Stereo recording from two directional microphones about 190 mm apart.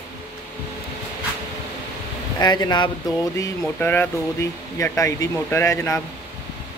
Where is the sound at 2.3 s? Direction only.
20° left (ahead or behind).